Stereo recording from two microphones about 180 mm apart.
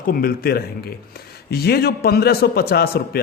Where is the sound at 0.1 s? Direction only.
55° left (ahead or behind).